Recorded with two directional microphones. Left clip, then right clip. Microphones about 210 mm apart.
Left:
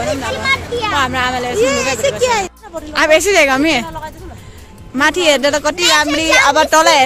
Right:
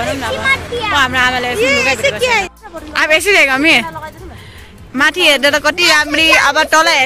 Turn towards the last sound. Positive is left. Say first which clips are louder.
# left 1 dB
turn(degrees=15)  # may be behind; listen again after turning